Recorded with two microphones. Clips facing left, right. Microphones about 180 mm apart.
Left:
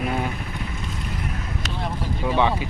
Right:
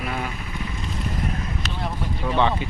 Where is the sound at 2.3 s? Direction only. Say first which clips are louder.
Even; 10° left (ahead or behind).